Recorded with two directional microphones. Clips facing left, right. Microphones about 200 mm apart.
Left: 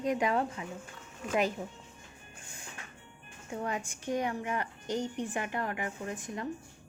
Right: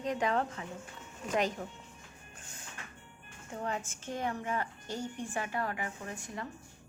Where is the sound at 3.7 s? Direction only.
15° left (ahead or behind).